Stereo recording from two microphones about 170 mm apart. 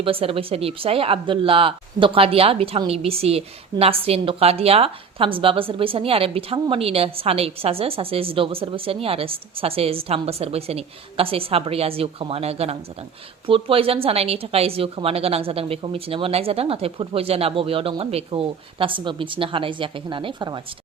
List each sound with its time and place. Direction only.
0.0 s speech: 35° right (ahead or behind)